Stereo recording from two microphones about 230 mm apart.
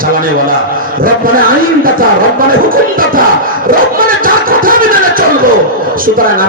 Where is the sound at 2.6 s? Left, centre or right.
Right.